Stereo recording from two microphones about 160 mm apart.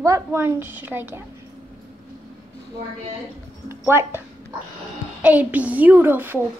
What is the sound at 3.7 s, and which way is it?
A woman's voice, 15° right (ahead or behind).